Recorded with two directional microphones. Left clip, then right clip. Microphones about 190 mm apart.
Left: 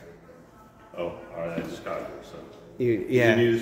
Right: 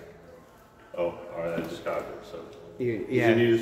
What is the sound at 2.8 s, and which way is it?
Speech, 60° left (ahead or behind).